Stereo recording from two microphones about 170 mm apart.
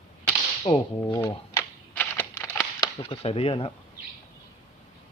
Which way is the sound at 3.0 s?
35° left (ahead or behind).